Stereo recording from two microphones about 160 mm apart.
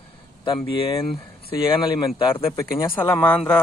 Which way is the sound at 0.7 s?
35° left (ahead or behind).